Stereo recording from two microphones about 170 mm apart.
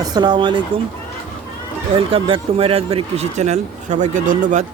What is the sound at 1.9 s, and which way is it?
A man's voice, 30° right (ahead or behind).